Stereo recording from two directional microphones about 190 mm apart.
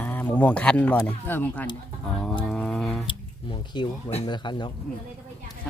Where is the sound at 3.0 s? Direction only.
25° left (ahead or behind).